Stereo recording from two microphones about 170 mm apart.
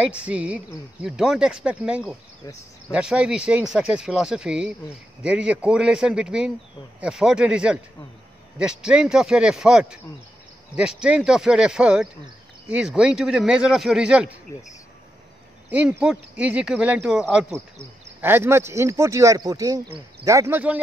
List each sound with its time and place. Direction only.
0.0 s speech: 5° right (ahead or behind)
14.5 s speech: 20° left (ahead or behind)
15.7 s speech: 10° right (ahead or behind)